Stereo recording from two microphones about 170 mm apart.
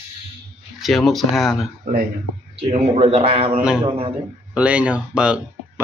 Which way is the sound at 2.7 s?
35° right (ahead or behind).